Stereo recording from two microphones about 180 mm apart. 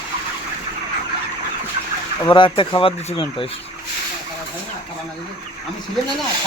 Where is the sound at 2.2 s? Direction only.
25° left (ahead or behind).